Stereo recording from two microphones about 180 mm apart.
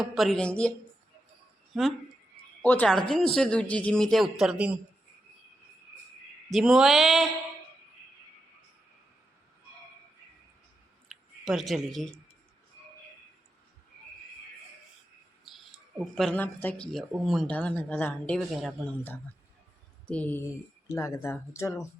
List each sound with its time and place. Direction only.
0.0 s speech: centre (ahead or behind)
2.6 s speech: 5° left (ahead or behind)
6.5 s speech: 5° right (ahead or behind)
11.1 s a sound: centre (ahead or behind)
16.1 s speech: 5° left (ahead or behind)